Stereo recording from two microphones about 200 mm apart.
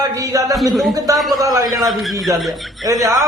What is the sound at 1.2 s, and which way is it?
Speech, centre (ahead or behind).